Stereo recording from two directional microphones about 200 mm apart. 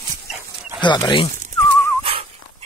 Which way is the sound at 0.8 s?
20° left (ahead or behind).